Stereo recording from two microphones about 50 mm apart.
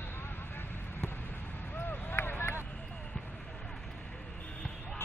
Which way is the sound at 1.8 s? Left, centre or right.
Left.